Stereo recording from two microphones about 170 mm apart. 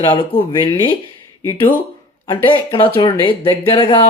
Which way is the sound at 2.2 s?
30° left (ahead or behind).